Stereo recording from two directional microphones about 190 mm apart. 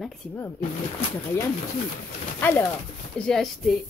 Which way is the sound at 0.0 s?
Centre (ahead or behind).